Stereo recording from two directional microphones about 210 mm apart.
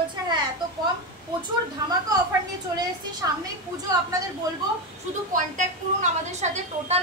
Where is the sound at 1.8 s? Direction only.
15° right (ahead or behind).